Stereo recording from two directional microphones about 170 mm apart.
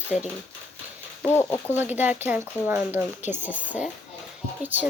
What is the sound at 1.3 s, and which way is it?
Speech, 15° left (ahead or behind).